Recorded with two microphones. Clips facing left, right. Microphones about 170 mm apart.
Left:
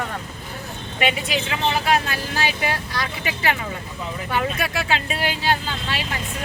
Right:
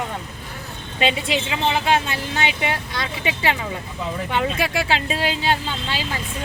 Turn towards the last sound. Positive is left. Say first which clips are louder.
# right 1 dB
turn(degrees=-25)  # may be behind; listen again after turning